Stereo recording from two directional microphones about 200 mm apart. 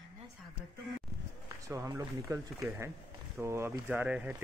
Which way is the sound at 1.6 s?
15° right (ahead or behind).